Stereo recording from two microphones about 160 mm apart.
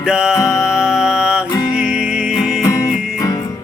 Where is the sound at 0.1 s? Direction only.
5° right (ahead or behind).